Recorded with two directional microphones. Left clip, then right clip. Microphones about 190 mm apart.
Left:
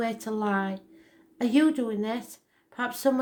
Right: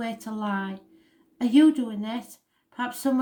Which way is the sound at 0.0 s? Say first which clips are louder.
Left 3 dB; 30° left (ahead or behind).